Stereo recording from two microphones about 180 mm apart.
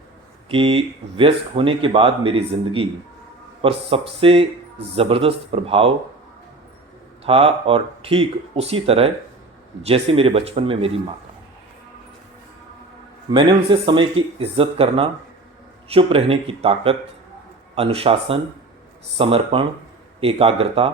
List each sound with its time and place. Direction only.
0.4 s speech: 30° right (ahead or behind)
7.3 s speech: 30° right (ahead or behind)
13.3 s speech: 25° right (ahead or behind)